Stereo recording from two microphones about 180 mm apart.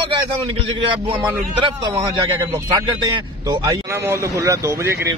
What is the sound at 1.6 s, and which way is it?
A man's voice, 25° right (ahead or behind).